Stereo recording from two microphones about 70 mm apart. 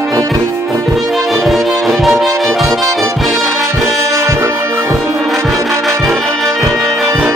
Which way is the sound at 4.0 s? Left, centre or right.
Right.